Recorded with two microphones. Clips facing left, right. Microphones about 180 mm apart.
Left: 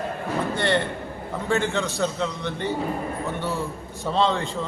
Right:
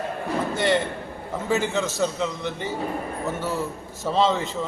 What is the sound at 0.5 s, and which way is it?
A man's voice, 5° right (ahead or behind).